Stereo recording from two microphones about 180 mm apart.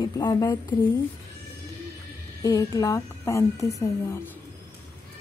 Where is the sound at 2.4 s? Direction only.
20° left (ahead or behind).